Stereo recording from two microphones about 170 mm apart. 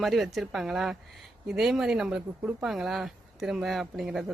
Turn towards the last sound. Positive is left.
turn(degrees=0)  # may be behind; listen again after turning